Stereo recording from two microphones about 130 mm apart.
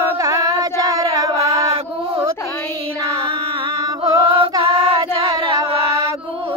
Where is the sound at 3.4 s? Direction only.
35° right (ahead or behind).